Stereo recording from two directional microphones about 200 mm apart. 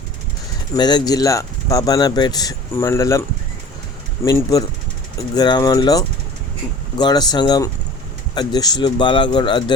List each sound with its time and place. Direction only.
0.8 s speech: 20° left (ahead or behind)